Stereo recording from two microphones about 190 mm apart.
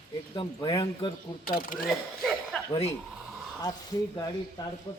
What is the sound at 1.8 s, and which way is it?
Speech, centre (ahead or behind).